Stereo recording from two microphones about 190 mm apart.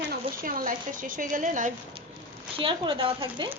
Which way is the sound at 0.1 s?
50° right (ahead or behind).